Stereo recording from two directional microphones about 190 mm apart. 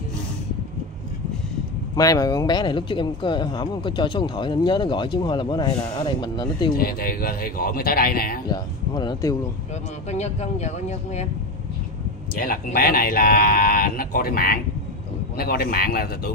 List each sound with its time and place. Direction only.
2.0 s speech: 20° left (ahead or behind)
6.7 s speech: 50° left (ahead or behind)
8.5 s speech: 20° left (ahead or behind)
10.0 s speech: 35° left (ahead or behind)
12.4 s speech: 50° left (ahead or behind)